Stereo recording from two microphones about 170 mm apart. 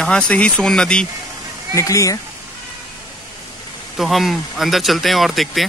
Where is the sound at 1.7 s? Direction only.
20° left (ahead or behind).